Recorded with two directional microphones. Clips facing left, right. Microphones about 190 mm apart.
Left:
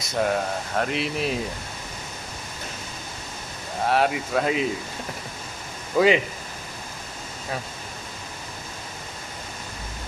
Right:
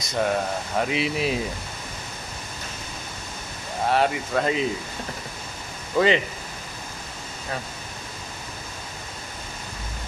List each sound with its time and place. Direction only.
0.1 s speech: centre (ahead or behind)
3.8 s speech: centre (ahead or behind)
5.9 s speech: 5° left (ahead or behind)